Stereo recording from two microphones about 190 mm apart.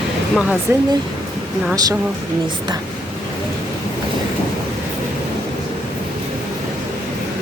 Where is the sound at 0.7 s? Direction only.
10° right (ahead or behind).